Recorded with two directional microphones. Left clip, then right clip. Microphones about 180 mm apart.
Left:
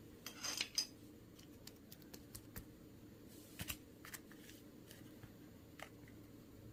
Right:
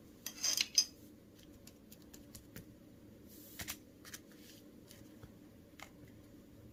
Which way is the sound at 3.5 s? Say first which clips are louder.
Right 3 dB; 25° right (ahead or behind).